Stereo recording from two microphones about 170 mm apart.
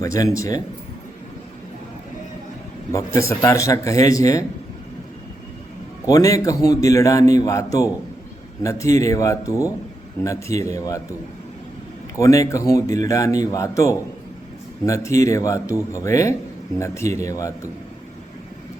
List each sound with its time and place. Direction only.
0.0 s a man's voice: 20° left (ahead or behind)
2.9 s a man's voice: 15° left (ahead or behind)
6.1 s a man's voice: 20° left (ahead or behind)
12.1 s a man's voice: 20° left (ahead or behind)